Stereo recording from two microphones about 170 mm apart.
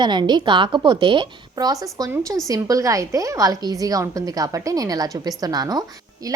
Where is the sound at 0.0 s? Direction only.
25° right (ahead or behind).